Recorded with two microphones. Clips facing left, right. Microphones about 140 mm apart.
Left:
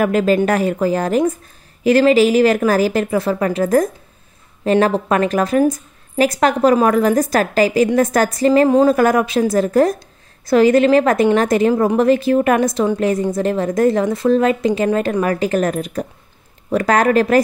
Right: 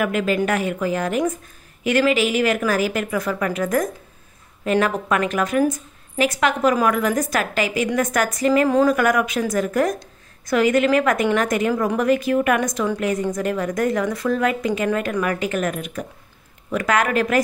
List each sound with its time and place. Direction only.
0.0 s a woman's voice: 35° left (ahead or behind)